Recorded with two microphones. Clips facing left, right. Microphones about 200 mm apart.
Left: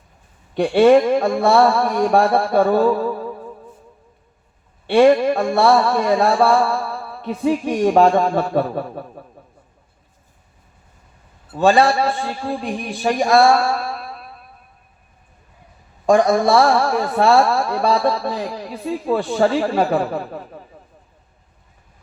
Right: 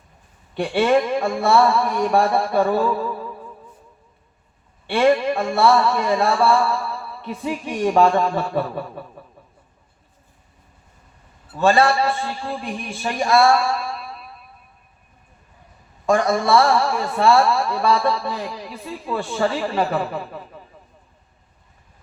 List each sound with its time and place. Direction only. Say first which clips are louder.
0.6 s speech: left 6 dB; 45° left (ahead or behind)
2.1 s music: left 2 dB; 50° left (ahead or behind)
2.6 s music: left 5 dB; 35° left (ahead or behind)
4.9 s speech: left 5 dB; 35° left (ahead or behind)
6.4 s music: left 2 dB; 45° left (ahead or behind)
11.6 s a man's voice: left 2 dB; 15° left (ahead or behind)
11.9 s music: left 1 dB; 50° left (ahead or behind)
13.0 s speech: left 3 dB; 40° left (ahead or behind)
16.0 s a man's voice: left 4 dB; 15° left (ahead or behind)
16.6 s speech: left 2 dB; 40° left (ahead or behind)
17.2 s music: left 1 dB; 45° left (ahead or behind)
17.7 s speech: left 3 dB; 40° left (ahead or behind)
18.4 s music: left 6 dB; 40° left (ahead or behind)